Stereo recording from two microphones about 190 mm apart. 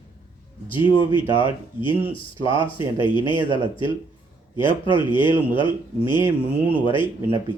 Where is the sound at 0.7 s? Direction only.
25° left (ahead or behind).